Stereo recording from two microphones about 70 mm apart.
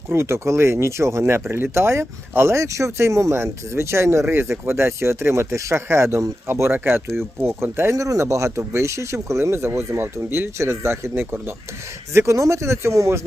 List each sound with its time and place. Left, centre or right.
0.1 s speech: right
7.9 s speech: right
10.6 s speech: right
12.1 s speech: right